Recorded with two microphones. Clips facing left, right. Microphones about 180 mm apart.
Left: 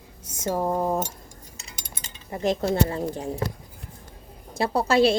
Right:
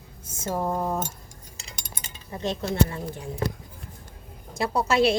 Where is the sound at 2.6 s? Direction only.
40° left (ahead or behind).